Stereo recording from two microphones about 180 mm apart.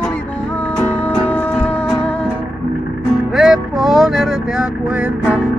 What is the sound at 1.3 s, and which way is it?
Music, 10° left (ahead or behind).